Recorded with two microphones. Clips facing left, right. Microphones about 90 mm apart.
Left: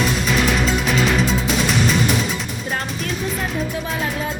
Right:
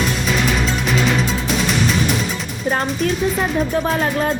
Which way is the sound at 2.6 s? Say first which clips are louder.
Right 9 dB; 40° right (ahead or behind).